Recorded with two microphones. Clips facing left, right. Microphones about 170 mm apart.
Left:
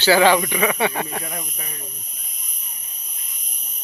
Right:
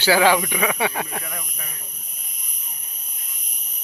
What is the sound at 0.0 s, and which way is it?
Speech, 10° right (ahead or behind).